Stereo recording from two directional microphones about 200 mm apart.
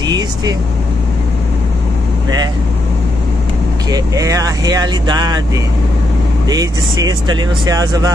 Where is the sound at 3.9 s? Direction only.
15° right (ahead or behind).